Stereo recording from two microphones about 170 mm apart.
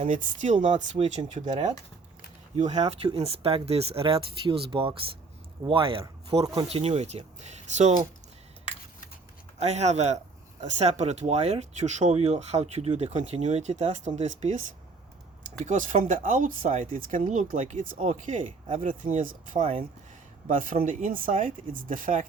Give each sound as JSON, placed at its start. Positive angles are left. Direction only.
{"t": 0.0, "sound": "speech", "side_deg": -45}
{"t": 9.6, "sound": "speech", "side_deg": -40}
{"t": 15.6, "sound": "speech", "side_deg": -50}